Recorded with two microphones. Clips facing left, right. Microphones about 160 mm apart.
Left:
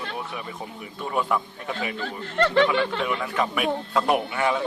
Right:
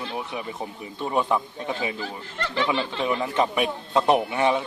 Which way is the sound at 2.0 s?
60° left (ahead or behind).